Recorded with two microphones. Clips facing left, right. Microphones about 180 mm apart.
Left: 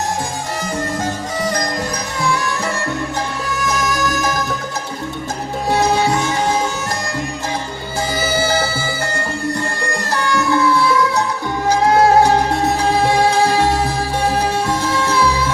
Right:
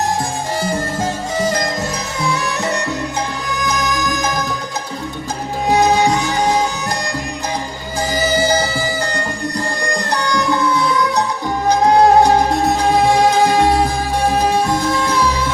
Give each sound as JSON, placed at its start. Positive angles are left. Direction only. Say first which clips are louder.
{"t": 0.6, "sound": "music", "louder": "right 1 dB", "side_deg": -25}
{"t": 9.9, "sound": "music", "louder": "even", "side_deg": -15}
{"t": 14.3, "sound": "music", "louder": "right 2 dB", "side_deg": -15}